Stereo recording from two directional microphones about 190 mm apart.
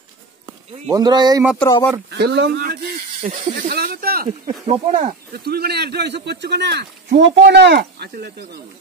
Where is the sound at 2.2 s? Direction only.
60° right (ahead or behind).